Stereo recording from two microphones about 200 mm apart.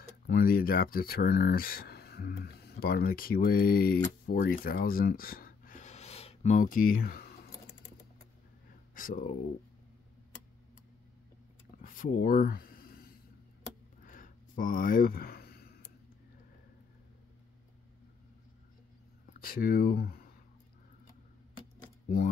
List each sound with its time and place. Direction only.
0.3 s speech: 50° left (ahead or behind)
8.9 s speech: 45° left (ahead or behind)
11.8 s a sound: 45° left (ahead or behind)
19.4 s speech: 45° left (ahead or behind)